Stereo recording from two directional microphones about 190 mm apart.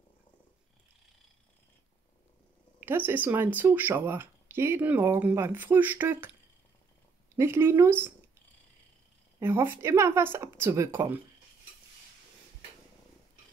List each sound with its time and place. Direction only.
2.8 s speech: 10° right (ahead or behind)
7.3 s speech: 15° right (ahead or behind)
9.4 s speech: 10° right (ahead or behind)